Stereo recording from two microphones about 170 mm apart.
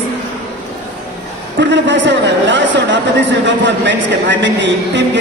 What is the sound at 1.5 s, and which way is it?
A man's voice, 90° right.